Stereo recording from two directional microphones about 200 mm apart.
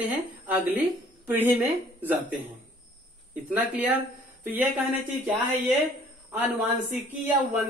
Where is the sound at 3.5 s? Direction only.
5° right (ahead or behind).